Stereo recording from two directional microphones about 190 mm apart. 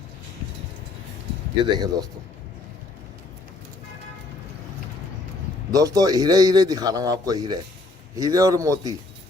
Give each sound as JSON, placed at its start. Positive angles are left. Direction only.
{"t": 1.7, "sound": "a man's voice", "side_deg": -20}
{"t": 5.7, "sound": "a man's voice", "side_deg": -20}